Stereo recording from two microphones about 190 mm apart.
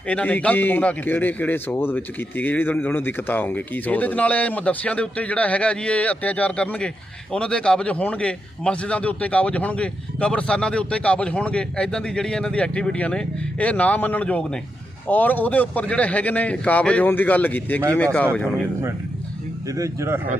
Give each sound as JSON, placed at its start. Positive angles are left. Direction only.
{"t": 0.1, "sound": "a man's voice", "side_deg": 10}
{"t": 19.7, "sound": "speech", "side_deg": -15}